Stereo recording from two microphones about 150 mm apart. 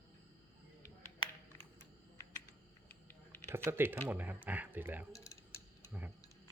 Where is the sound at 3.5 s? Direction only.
15° right (ahead or behind).